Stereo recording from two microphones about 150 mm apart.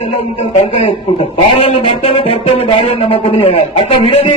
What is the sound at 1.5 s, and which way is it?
Speech, 35° left (ahead or behind).